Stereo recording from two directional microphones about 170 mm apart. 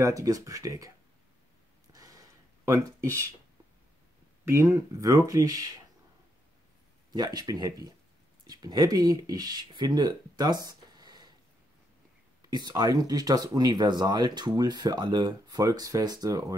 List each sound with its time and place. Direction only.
0.0 s speech: 20° right (ahead or behind)
1.9 s a sound: 20° right (ahead or behind)
4.5 s speech: 15° right (ahead or behind)
7.1 s speech: 25° right (ahead or behind)
12.4 s speech: 25° right (ahead or behind)